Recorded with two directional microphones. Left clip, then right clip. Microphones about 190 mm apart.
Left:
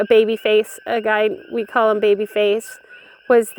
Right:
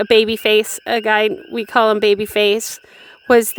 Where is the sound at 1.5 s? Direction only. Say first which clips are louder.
Right 2 dB; 40° right (ahead or behind).